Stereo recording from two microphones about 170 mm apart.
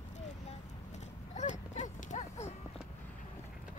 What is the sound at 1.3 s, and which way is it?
Dog, 45° left (ahead or behind).